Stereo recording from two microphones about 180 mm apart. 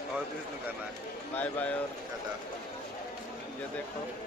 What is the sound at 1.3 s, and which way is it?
Speech, 10° left (ahead or behind).